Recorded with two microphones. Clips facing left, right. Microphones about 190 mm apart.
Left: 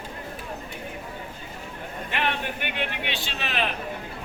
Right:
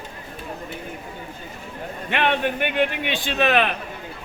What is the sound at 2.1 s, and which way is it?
A man's voice, 60° right (ahead or behind).